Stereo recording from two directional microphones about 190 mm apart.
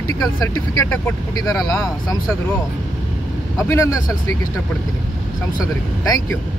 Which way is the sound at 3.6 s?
15° left (ahead or behind).